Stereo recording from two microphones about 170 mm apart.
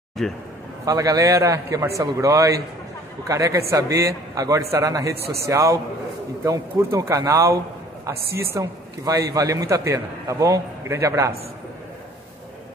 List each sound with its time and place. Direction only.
0.8 s a man's voice: 20° right (ahead or behind)
8.5 s a man's voice: 20° right (ahead or behind)